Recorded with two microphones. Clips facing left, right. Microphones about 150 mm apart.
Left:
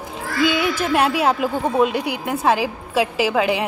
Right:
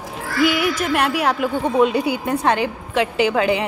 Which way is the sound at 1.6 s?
5° left (ahead or behind).